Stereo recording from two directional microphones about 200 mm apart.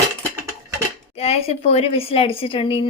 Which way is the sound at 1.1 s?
30° left (ahead or behind).